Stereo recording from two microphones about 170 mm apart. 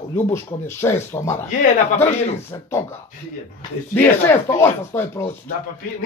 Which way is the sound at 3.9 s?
15° left (ahead or behind).